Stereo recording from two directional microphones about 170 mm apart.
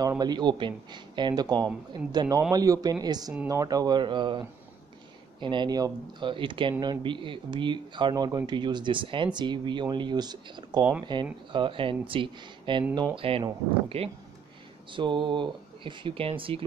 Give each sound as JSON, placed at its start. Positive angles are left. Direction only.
{"t": 0.2, "sound": "speech", "side_deg": -25}